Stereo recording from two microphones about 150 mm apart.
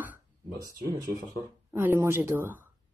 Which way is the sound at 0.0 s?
10° right (ahead or behind).